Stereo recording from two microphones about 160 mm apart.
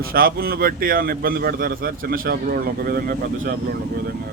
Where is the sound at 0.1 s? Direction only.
65° right (ahead or behind).